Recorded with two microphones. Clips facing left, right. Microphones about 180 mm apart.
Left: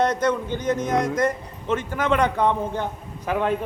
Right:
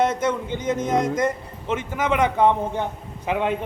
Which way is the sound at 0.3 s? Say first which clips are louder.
Left 1 dB; 20° right (ahead or behind).